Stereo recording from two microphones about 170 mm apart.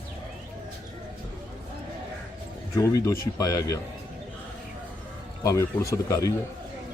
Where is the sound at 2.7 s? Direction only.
20° left (ahead or behind).